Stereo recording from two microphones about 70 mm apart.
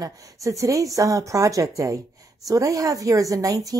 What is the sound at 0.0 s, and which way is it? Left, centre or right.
Speech, right.